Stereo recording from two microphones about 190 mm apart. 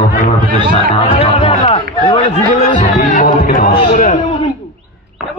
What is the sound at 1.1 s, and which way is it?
Chatter, 30° left (ahead or behind).